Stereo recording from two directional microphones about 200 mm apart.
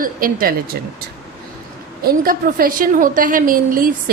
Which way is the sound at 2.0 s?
45° right (ahead or behind).